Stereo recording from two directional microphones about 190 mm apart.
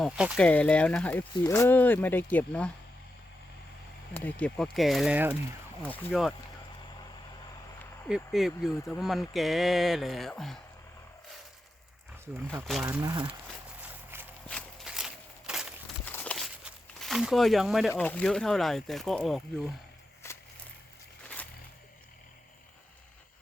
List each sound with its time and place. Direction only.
0.0 s speech: centre (ahead or behind)
4.1 s speech: 10° left (ahead or behind); by 5.4 s 5° right (ahead or behind)
5.8 s speech: 5° left (ahead or behind)
8.0 s speech: centre (ahead or behind)
12.2 s speech: 10° right (ahead or behind)
12.6 s speech: centre (ahead or behind)
12.9 s speech: 20° right (ahead or behind)
13.8 s walk: 10° right (ahead or behind)
14.4 s walk: 5° left (ahead or behind)
16.0 s a sound: 5° left (ahead or behind)
16.6 s speech: centre (ahead or behind)
20.2 s a sound: 15° left (ahead or behind)